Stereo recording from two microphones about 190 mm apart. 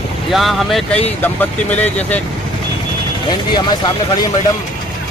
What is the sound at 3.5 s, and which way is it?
Speech, 20° left (ahead or behind).